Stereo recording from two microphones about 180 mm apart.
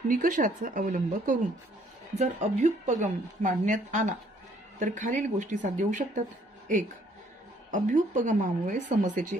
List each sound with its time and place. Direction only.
0.1 s a woman's voice: 50° right (ahead or behind)
7.7 s a woman's voice: 45° right (ahead or behind)